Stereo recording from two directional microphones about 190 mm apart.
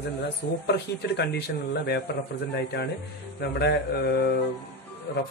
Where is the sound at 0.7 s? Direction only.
60° left (ahead or behind).